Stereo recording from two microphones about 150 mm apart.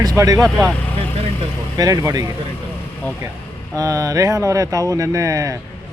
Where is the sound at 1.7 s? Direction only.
25° right (ahead or behind).